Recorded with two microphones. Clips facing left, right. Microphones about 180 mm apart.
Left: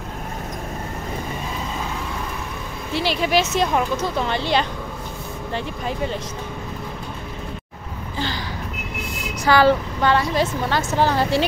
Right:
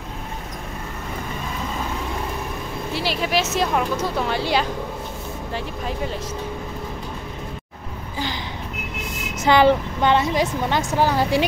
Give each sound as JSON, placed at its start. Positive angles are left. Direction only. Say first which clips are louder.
{"t": 2.9, "sound": "a woman's voice", "louder": "left 3 dB", "side_deg": 0}
{"t": 9.4, "sound": "a woman's voice", "louder": "even", "side_deg": -20}